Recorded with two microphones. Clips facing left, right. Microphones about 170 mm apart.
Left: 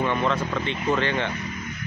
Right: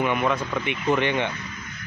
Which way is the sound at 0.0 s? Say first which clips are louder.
Even; 15° right (ahead or behind).